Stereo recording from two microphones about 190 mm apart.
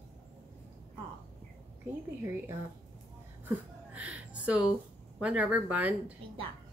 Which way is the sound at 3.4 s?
5° right (ahead or behind).